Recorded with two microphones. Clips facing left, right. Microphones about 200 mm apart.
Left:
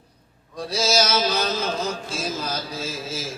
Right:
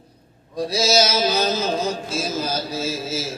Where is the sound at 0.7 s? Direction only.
10° right (ahead or behind).